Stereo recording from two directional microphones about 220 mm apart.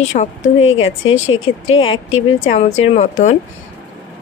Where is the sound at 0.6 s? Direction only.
65° left (ahead or behind).